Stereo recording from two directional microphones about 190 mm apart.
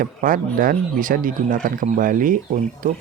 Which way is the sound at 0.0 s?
45° right (ahead or behind).